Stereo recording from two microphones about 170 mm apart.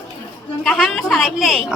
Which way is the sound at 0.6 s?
5° left (ahead or behind).